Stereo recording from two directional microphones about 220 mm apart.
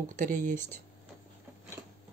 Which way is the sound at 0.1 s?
35° right (ahead or behind).